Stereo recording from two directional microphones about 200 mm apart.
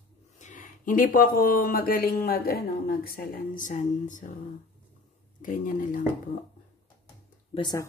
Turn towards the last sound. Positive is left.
turn(degrees=20)  # may be behind; listen again after turning